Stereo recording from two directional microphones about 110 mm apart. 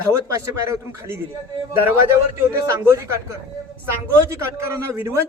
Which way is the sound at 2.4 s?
25° right (ahead or behind).